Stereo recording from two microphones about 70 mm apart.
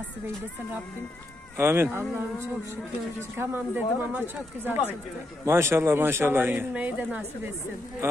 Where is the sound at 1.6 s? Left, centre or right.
Right.